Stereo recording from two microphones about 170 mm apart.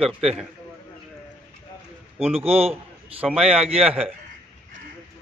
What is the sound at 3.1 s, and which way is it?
Speech, 5° right (ahead or behind).